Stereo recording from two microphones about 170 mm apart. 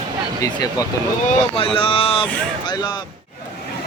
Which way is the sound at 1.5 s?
30° left (ahead or behind).